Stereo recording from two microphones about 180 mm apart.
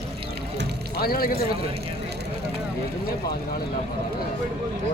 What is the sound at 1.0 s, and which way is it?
Speech, 55° left (ahead or behind).